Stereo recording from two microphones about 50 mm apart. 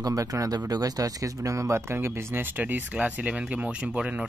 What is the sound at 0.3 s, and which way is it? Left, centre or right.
Speech, right.